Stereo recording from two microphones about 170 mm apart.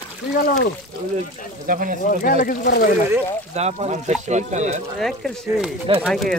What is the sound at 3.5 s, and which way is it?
Speech, 40° right (ahead or behind).